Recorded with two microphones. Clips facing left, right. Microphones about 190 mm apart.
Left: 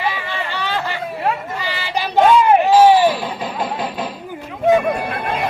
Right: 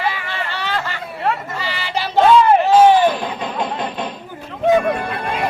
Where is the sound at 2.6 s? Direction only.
5° left (ahead or behind).